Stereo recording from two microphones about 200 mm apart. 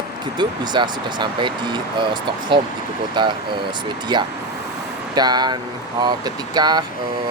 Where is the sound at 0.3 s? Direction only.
20° right (ahead or behind).